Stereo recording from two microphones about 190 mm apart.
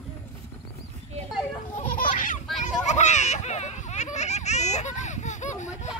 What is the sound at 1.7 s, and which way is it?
Baby laughter, 45° left (ahead or behind).